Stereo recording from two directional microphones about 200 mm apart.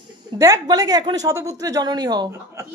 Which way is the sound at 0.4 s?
20° right (ahead or behind).